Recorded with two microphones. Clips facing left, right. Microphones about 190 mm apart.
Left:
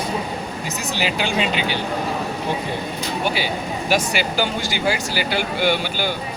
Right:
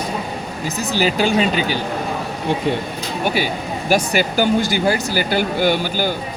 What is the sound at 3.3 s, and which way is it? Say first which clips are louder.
Speech: right 3 dB; 45° right (ahead or behind).